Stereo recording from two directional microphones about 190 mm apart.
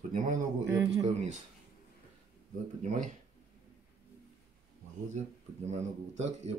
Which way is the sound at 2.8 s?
35° right (ahead or behind).